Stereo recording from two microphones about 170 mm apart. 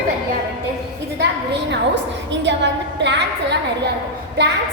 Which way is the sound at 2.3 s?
90° right.